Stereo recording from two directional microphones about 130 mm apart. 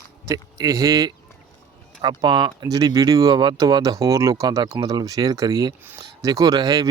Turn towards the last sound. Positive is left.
turn(degrees=-30)  # may be behind; listen again after turning